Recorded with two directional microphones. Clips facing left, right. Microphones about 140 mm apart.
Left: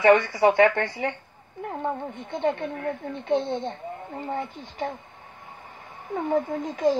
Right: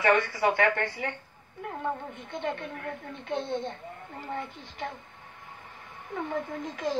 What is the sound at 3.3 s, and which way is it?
A woman's voice, 25° left (ahead or behind).